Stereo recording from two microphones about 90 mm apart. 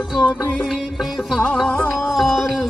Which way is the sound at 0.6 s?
Centre (ahead or behind).